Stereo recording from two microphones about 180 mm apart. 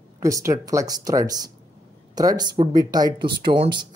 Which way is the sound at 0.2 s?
15° right (ahead or behind).